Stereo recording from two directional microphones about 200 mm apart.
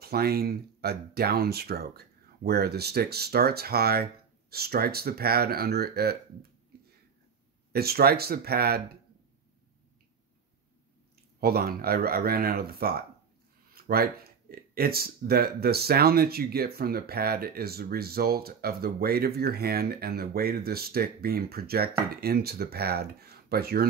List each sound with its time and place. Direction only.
0.0 s speech: 50° right (ahead or behind)
7.7 s speech: 50° right (ahead or behind)
11.4 s speech: 50° right (ahead or behind)